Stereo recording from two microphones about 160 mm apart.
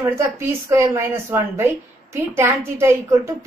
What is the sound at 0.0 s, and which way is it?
A woman's voice, 15° right (ahead or behind).